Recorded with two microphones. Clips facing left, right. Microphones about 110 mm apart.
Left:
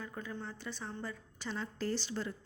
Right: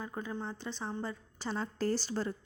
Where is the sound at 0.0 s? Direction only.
25° right (ahead or behind).